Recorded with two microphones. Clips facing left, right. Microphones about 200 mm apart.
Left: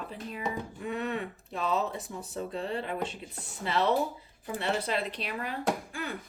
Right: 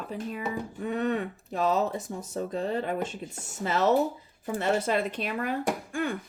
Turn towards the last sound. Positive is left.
turn(degrees=-50)  # may be behind; listen again after turning